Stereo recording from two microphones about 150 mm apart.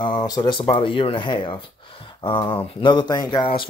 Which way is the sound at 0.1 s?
30° left (ahead or behind).